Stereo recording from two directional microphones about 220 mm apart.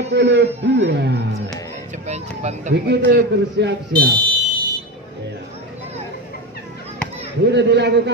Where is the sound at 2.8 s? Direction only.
50° right (ahead or behind).